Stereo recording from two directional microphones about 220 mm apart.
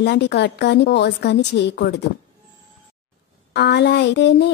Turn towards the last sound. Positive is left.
turn(degrees=50)  # may be behind; listen again after turning